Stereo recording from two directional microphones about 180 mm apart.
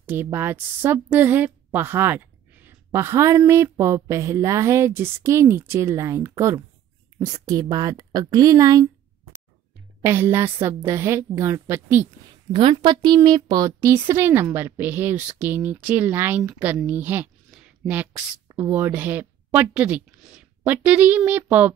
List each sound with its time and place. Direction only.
0.0 s a woman's voice: 10° right (ahead or behind)
10.0 s a woman's voice: 15° right (ahead or behind)
12.5 s a woman's voice: 25° right (ahead or behind); by 17.3 s 10° right (ahead or behind)
17.5 s a sound: 5° right (ahead or behind)
18.5 s a woman's voice: 10° right (ahead or behind)